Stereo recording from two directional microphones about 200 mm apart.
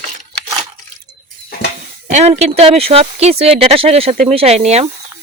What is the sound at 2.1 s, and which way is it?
Speech, 35° right (ahead or behind).